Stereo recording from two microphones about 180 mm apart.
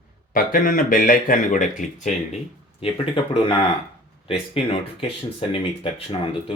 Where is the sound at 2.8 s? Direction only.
30° left (ahead or behind).